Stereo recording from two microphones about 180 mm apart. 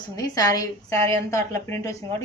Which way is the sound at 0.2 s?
20° left (ahead or behind).